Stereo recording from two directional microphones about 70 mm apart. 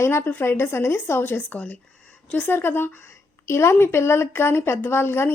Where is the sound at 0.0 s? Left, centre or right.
Left.